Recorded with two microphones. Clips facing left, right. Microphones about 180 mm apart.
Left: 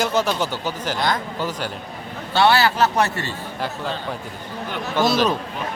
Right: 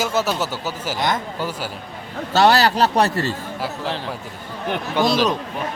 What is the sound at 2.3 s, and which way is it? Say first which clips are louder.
A man's voice: right 2 dB; 40° right (ahead or behind).